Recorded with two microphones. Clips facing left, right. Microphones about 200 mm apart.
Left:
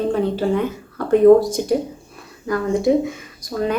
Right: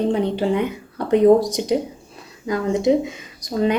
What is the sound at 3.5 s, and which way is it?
Speech, 25° right (ahead or behind).